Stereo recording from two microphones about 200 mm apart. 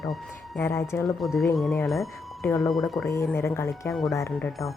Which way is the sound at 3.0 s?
15° left (ahead or behind).